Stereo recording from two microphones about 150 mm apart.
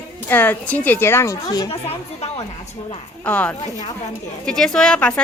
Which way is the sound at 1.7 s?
40° left (ahead or behind).